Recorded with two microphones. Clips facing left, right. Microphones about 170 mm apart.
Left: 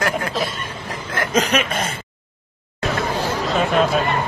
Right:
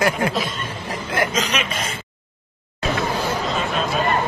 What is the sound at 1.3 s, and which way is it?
Speech, 55° left (ahead or behind).